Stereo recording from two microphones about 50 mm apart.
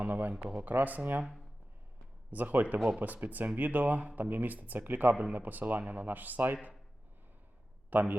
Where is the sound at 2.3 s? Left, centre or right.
Right.